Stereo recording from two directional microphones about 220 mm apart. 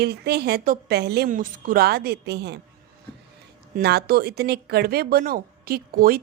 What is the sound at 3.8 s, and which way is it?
A woman's voice, 45° right (ahead or behind).